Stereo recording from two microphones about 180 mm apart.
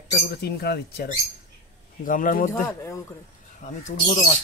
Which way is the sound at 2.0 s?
45° left (ahead or behind).